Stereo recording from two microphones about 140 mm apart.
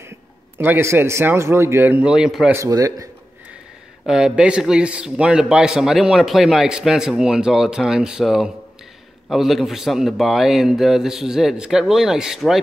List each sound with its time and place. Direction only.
0.6 s a man's voice: 15° right (ahead or behind)
2.5 s speech: 25° right (ahead or behind)
4.0 s a man's voice: 5° right (ahead or behind)